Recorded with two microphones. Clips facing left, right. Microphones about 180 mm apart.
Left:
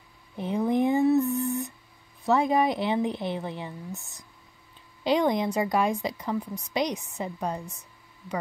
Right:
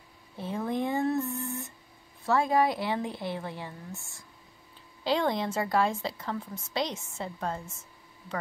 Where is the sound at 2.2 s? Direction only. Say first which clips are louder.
Left 2 dB; 20° left (ahead or behind).